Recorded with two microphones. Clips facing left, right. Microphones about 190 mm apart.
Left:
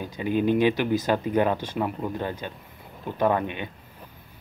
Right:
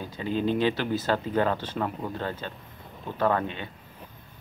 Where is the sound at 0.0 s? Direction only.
15° left (ahead or behind).